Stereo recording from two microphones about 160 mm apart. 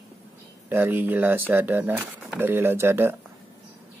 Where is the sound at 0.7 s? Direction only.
10° right (ahead or behind).